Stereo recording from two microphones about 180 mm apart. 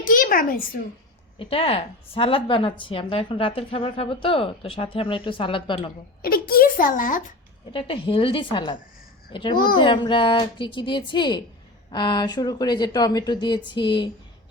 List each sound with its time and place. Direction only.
0.0 s a sound: 50° left (ahead or behind)
1.4 s speech: 30° left (ahead or behind)
6.2 s a child's voice: 55° left (ahead or behind)
7.7 s speech: 30° left (ahead or behind)